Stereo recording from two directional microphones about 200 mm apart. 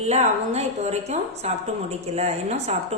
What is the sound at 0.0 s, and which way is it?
A woman's voice, 35° right (ahead or behind).